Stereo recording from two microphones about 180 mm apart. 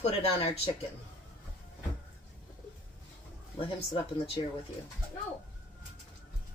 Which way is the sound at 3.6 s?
30° left (ahead or behind).